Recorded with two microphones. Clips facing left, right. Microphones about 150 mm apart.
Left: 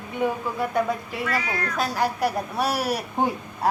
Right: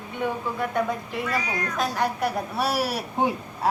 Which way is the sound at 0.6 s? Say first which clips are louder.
Left 2 dB; 5° left (ahead or behind).